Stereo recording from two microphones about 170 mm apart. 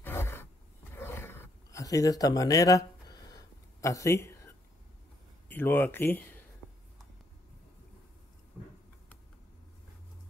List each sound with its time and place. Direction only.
0.0 s a sound: 15° left (ahead or behind)
0.9 s roaring cats: 15° left (ahead or behind)
5.5 s speech: 10° left (ahead or behind)